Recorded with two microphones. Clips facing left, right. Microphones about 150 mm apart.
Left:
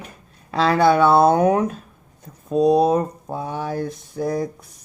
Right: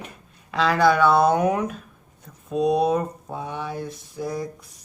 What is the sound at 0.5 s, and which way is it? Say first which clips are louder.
Speech: left 3 dB; 30° left (ahead or behind).